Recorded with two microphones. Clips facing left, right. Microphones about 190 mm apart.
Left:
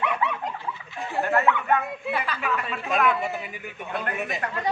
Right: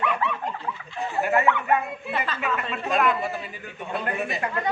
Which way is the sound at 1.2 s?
10° right (ahead or behind).